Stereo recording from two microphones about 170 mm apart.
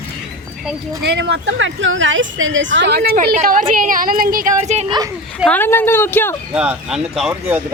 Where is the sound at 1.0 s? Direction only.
90° right.